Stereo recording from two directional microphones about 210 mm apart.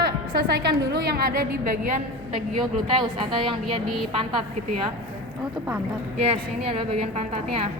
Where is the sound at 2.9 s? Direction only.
25° right (ahead or behind).